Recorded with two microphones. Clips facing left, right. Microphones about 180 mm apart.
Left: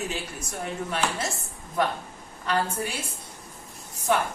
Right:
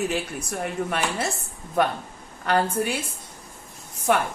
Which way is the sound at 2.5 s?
60° right (ahead or behind).